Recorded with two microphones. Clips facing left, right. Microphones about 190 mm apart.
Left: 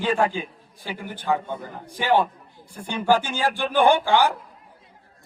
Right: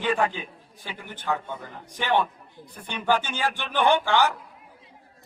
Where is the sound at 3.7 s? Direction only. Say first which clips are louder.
Left 3 dB; 10° left (ahead or behind).